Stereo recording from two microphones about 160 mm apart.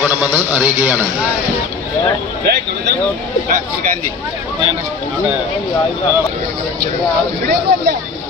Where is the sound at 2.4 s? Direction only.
90° right.